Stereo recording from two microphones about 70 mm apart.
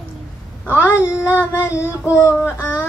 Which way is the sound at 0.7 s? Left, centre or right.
Left.